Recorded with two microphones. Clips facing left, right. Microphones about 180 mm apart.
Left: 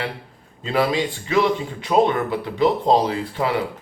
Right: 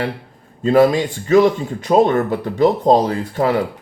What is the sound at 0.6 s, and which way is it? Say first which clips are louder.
Speech: right 8 dB; 45° right (ahead or behind).